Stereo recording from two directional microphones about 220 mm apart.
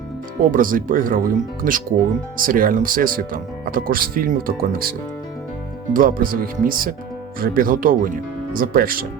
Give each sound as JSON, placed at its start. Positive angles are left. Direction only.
{"t": 0.5, "sound": "speech", "side_deg": -40}